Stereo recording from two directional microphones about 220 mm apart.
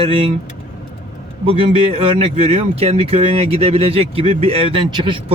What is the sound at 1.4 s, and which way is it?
Speech, 25° right (ahead or behind).